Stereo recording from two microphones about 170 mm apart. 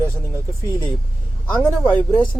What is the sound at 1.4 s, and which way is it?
Speech, 10° left (ahead or behind).